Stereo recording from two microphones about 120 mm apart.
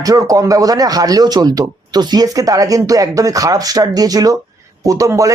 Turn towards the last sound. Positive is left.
turn(degrees=-25)  # may be behind; listen again after turning